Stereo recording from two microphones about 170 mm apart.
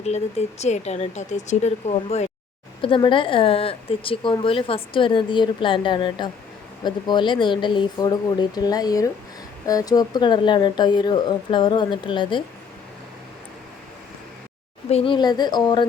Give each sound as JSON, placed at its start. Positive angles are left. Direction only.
{"t": 0.0, "sound": "speech", "side_deg": 40}
{"t": 2.8, "sound": "speech", "side_deg": 30}
{"t": 14.8, "sound": "speech", "side_deg": 35}